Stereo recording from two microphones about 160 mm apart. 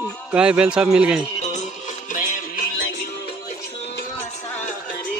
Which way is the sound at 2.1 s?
55° left (ahead or behind).